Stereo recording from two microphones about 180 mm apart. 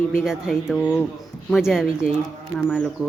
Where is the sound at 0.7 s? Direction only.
10° left (ahead or behind).